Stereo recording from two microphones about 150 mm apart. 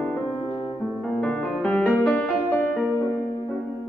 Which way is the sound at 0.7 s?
5° left (ahead or behind).